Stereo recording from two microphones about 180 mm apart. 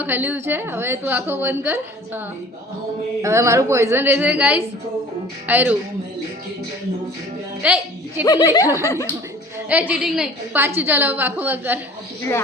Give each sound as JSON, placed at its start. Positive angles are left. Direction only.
{"t": 0.0, "sound": "a woman's voice", "side_deg": -10}
{"t": 7.6, "sound": "a woman's voice", "side_deg": -5}
{"t": 8.2, "sound": "speech", "side_deg": 20}
{"t": 8.6, "sound": "a woman's voice", "side_deg": -15}